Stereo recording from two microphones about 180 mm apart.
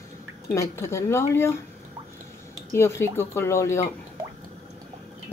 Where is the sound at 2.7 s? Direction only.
15° left (ahead or behind).